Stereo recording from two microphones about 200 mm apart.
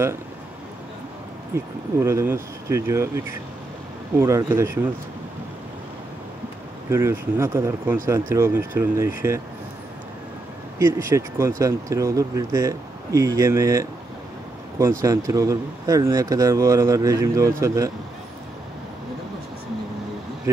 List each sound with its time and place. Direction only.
1.5 s speech: 15° right (ahead or behind)
6.9 s speech: 15° right (ahead or behind)
10.8 s speech: 15° right (ahead or behind)
20.5 s speech: 15° right (ahead or behind)